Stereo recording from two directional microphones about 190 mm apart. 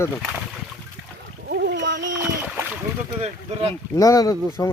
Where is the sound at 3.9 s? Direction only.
20° left (ahead or behind).